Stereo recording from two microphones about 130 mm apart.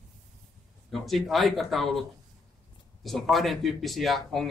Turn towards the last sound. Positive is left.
turn(degrees=0)  # may be behind; listen again after turning